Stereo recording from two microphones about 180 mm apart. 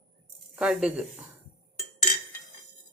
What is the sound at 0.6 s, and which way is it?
Speech, 5° right (ahead or behind).